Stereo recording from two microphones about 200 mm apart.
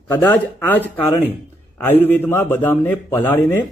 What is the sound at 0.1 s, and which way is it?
A man's voice, 10° left (ahead or behind).